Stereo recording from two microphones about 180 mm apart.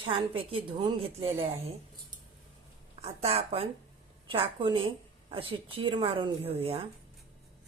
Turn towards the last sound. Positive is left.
turn(degrees=-30)  # may be behind; listen again after turning